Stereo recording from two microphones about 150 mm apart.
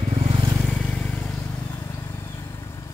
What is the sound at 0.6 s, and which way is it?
Vehicle, 5° left (ahead or behind).